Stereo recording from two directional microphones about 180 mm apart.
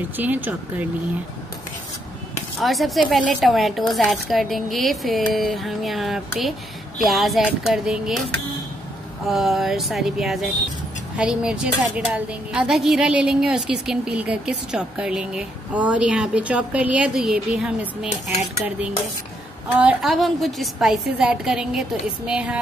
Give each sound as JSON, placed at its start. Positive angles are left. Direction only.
{"t": 0.2, "sound": "speech", "side_deg": -10}
{"t": 2.6, "sound": "speech", "side_deg": 0}
{"t": 9.3, "sound": "speech", "side_deg": 0}
{"t": 19.8, "sound": "speech", "side_deg": -5}